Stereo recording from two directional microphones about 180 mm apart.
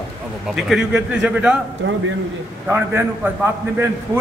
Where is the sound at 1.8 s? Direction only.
90° right.